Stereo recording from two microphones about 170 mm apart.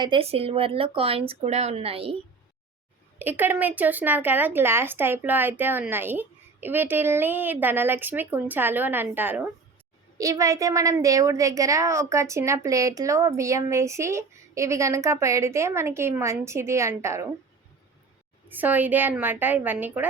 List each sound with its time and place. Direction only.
0.0 s speech: 30° right (ahead or behind)
3.2 s a woman's voice: 10° right (ahead or behind)
18.4 s a woman's voice: 10° right (ahead or behind)